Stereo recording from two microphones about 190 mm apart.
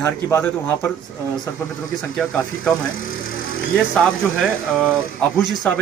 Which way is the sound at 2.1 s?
5° left (ahead or behind).